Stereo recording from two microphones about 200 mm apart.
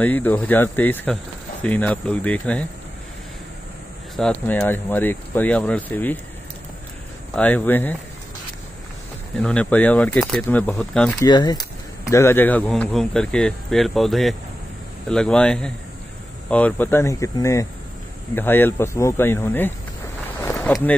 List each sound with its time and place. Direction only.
0.0 s speech: 10° left (ahead or behind)
4.2 s speech: 5° left (ahead or behind)
7.3 s speech: 10° left (ahead or behind)
9.4 s speech: 5° left (ahead or behind)
11.1 s speech: 20° left (ahead or behind); by 20.9 s 5° left (ahead or behind)